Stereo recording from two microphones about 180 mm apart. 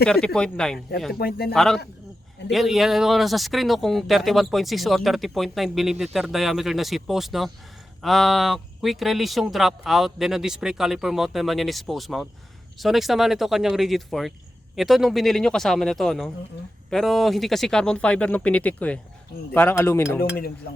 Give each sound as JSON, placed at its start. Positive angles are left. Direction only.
{"t": 0.0, "sound": "speech", "side_deg": 5}
{"t": 1.2, "sound": "speech", "side_deg": 60}
{"t": 1.5, "sound": "speech", "side_deg": 0}